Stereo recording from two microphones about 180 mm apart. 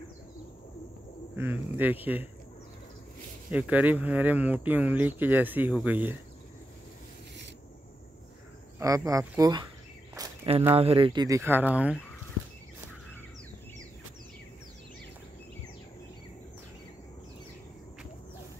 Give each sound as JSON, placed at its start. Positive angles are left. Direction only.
{"t": 1.3, "sound": "speech", "side_deg": -10}
{"t": 3.4, "sound": "speech", "side_deg": -5}
{"t": 8.7, "sound": "speech", "side_deg": -20}
{"t": 10.1, "sound": "a sound", "side_deg": -20}
{"t": 10.7, "sound": "speech", "side_deg": -30}